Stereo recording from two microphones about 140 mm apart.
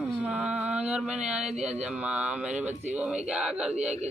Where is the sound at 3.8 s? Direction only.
50° right (ahead or behind).